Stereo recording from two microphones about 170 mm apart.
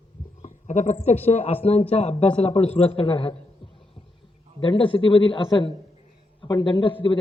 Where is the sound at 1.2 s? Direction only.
35° left (ahead or behind).